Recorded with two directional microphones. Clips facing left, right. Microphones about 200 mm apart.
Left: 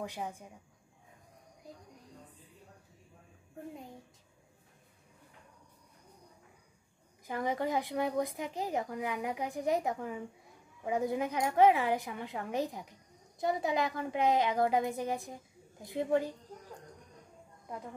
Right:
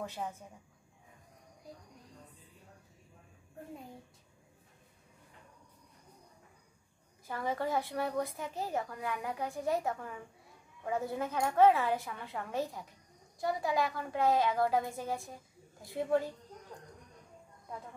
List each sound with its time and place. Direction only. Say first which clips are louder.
0.0 s a woman's voice: even; 15° left (ahead or behind)
7.2 s a woman's voice: left 2 dB; 15° left (ahead or behind)